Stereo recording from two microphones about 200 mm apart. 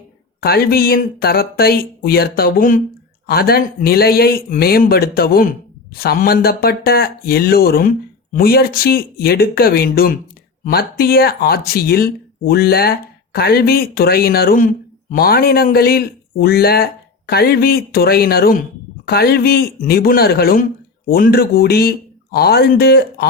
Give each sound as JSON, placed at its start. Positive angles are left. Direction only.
{"t": 0.4, "sound": "speech", "side_deg": 50}